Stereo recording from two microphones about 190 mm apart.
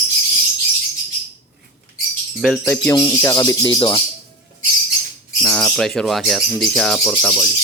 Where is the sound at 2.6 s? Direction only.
15° left (ahead or behind).